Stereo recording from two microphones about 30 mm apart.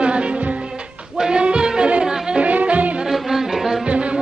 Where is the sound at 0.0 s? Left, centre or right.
Right.